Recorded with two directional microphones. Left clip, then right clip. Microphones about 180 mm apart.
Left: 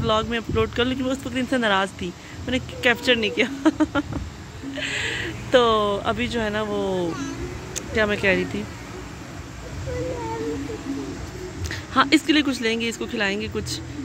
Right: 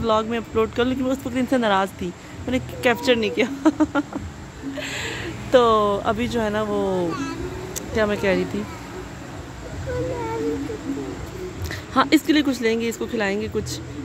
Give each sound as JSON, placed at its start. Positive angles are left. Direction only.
{"t": 0.0, "sound": "speech", "side_deg": -10}
{"t": 11.7, "sound": "speech", "side_deg": -10}